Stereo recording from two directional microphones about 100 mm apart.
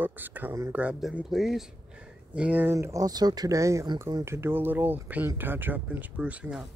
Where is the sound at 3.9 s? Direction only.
45° right (ahead or behind).